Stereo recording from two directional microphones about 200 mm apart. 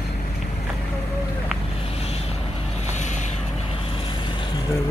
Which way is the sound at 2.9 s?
35° left (ahead or behind).